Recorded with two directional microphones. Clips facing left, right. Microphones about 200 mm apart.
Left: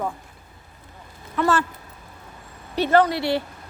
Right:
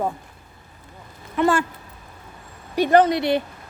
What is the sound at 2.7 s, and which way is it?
Speech, 15° right (ahead or behind).